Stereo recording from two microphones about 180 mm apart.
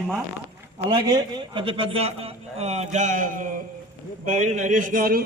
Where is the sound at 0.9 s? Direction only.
25° right (ahead or behind).